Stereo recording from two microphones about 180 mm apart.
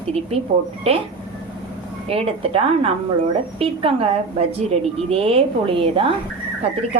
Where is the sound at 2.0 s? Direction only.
35° right (ahead or behind).